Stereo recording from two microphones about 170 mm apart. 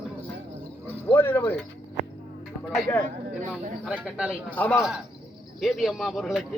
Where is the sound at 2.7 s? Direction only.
5° left (ahead or behind).